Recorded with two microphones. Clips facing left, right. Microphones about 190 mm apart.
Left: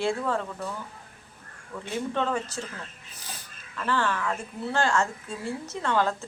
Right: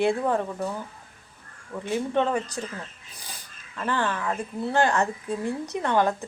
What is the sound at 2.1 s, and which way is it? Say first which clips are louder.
Speech: right 4 dB; 15° right (ahead or behind).